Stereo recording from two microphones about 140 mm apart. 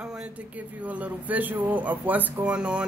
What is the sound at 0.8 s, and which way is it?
Speech, 10° right (ahead or behind).